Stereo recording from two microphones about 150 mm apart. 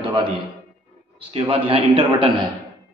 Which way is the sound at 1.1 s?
40° right (ahead or behind).